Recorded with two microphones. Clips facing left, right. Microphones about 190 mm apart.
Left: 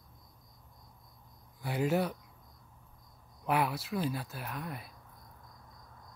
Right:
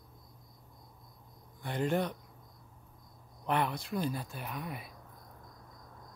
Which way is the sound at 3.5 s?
5° left (ahead or behind).